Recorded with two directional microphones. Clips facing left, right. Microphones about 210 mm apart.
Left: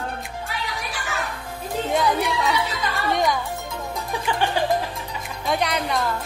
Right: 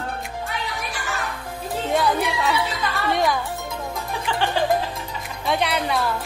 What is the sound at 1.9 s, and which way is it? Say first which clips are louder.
A woman's voice: right 1 dB; centre (ahead or behind).